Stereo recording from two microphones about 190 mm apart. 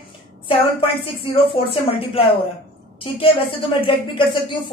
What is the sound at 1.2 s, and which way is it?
Speech, 30° left (ahead or behind).